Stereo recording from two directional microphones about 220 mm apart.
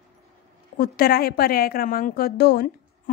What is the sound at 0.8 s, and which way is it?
A woman's voice, 40° left (ahead or behind).